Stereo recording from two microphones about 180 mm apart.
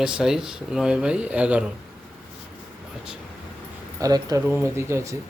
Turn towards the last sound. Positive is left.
turn(degrees=-15)  # may be behind; listen again after turning